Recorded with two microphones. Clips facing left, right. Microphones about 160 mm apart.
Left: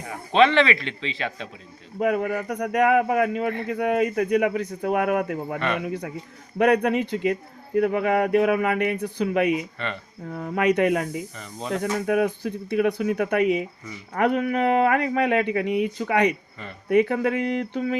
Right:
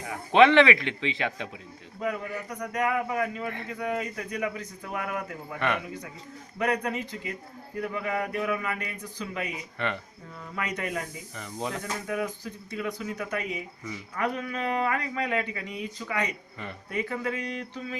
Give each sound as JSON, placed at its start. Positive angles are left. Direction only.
{"t": 0.3, "sound": "speech", "side_deg": -15}
{"t": 2.0, "sound": "speech", "side_deg": 70}
{"t": 5.5, "sound": "speech", "side_deg": -15}
{"t": 6.6, "sound": "speech", "side_deg": 65}
{"t": 9.7, "sound": "speech", "side_deg": -15}
{"t": 10.2, "sound": "speech", "side_deg": 60}